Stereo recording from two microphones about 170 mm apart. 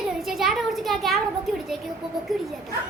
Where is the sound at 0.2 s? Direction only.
Centre (ahead or behind).